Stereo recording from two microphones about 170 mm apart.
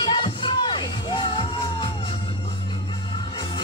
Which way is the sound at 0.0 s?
30° left (ahead or behind).